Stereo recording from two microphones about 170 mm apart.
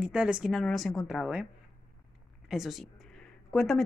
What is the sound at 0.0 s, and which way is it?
Speech, 5° right (ahead or behind).